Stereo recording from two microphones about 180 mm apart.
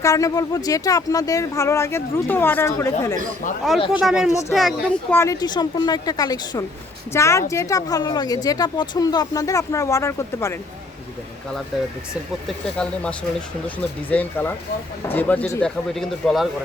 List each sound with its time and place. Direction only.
0.0 s speech: 20° left (ahead or behind)
3.8 s speech: 30° left (ahead or behind)
4.0 s speech: 5° right (ahead or behind)
5.1 s speech: 15° left (ahead or behind)
12.5 s speech: 5° left (ahead or behind)